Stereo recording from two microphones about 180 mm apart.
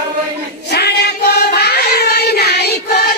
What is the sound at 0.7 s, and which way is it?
Child singing, 65° left (ahead or behind).